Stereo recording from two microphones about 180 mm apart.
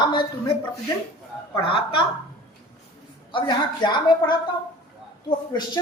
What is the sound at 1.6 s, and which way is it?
Speech, 30° left (ahead or behind).